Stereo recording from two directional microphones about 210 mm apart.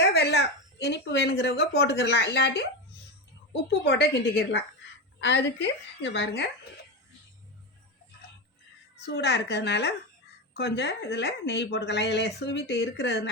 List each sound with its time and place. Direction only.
0.1 s a woman's voice: 50° left (ahead or behind)
9.0 s speech: 55° left (ahead or behind)